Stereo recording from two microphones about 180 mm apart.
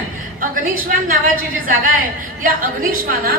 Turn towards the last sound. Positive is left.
turn(degrees=-50)  # may be behind; listen again after turning